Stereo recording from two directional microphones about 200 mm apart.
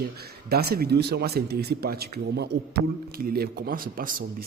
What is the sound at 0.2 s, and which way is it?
A man's voice, 50° right (ahead or behind).